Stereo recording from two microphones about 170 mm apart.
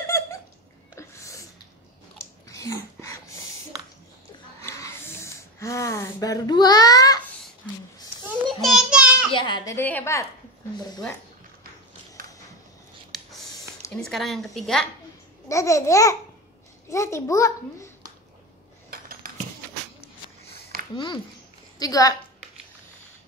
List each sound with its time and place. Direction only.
0.1 s a sound: 15° left (ahead or behind)
2.4 s a sound: 20° left (ahead or behind)
4.6 s a sound: 15° left (ahead or behind)
8.5 s child singing: centre (ahead or behind)
9.3 s baby cry: 25° left (ahead or behind)
9.8 s a child's voice: 10° left (ahead or behind)
13.9 s speech: 5° left (ahead or behind)
15.4 s babbling: 20° left (ahead or behind)
16.9 s a child's voice: 15° left (ahead or behind)
18.9 s a sound: 60° right (ahead or behind)
20.9 s babbling: 30° left (ahead or behind)
21.7 s a woman's voice: 20° left (ahead or behind)